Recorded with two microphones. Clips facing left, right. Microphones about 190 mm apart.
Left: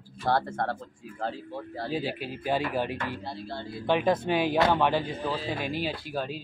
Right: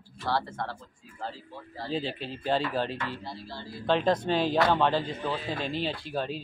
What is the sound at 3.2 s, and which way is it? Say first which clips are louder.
Music: left 4 dB; 60° left (ahead or behind).